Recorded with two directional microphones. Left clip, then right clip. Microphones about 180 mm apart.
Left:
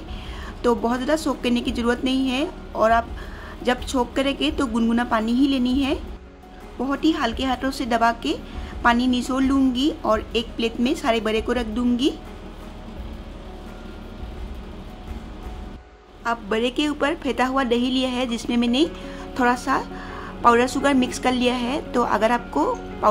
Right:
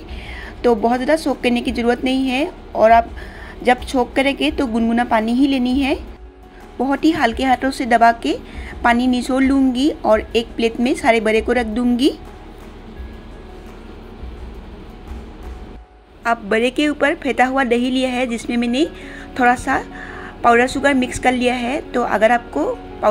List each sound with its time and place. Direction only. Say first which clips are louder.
0.6 s a woman's voice: right 6 dB; 10° right (ahead or behind)
16.3 s a woman's voice: right 6 dB; 15° right (ahead or behind)